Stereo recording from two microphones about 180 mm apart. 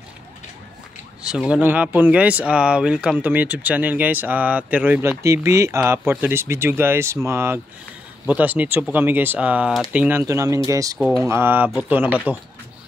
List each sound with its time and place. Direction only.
1.2 s speech: 5° right (ahead or behind)
11.0 s speech: centre (ahead or behind)
11.2 s speech: 10° right (ahead or behind)